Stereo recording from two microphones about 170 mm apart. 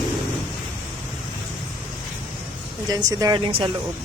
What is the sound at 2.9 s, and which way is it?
Speech, 20° right (ahead or behind).